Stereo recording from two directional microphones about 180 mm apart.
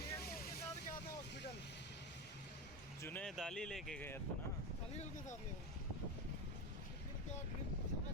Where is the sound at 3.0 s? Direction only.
5° left (ahead or behind).